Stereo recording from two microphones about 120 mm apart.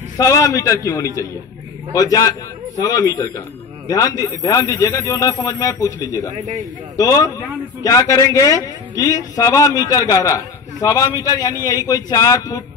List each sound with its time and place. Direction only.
0.2 s a man's voice: 30° left (ahead or behind)
6.3 s speech: 70° right (ahead or behind)
7.0 s a man's voice: 30° left (ahead or behind)